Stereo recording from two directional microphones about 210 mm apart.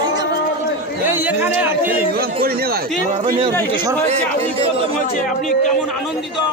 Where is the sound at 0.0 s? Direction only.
20° right (ahead or behind).